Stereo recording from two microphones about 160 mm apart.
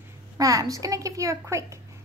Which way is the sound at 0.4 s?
20° right (ahead or behind).